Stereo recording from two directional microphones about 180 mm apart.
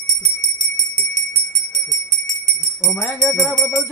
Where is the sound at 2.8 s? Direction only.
Centre (ahead or behind).